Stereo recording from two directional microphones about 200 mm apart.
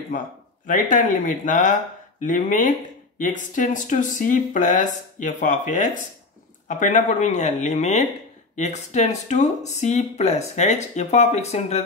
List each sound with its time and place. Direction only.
0.7 s speech: 40° left (ahead or behind)